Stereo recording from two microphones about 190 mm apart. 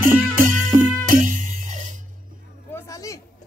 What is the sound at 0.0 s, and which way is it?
Music, 45° right (ahead or behind).